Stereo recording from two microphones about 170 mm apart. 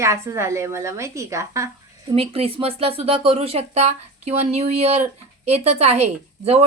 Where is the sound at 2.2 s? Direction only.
35° right (ahead or behind).